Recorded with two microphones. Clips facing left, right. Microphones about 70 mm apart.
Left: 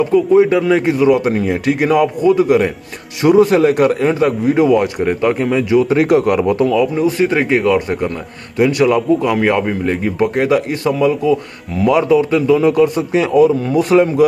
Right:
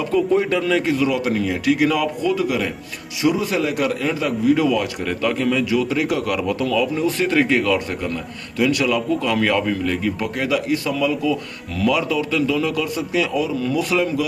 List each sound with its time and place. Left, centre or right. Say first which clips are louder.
0.1 s a man's voice: left 6 dB; centre; by 2.7 s left
3.2 s a man's voice: left 10 dB; left